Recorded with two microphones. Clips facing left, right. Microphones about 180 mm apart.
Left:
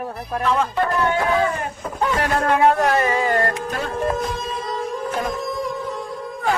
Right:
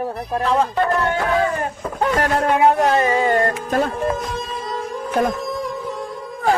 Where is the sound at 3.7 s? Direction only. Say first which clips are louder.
Right 7 dB; 45° right (ahead or behind).